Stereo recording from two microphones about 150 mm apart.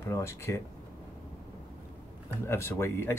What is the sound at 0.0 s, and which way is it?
Speech, 15° left (ahead or behind).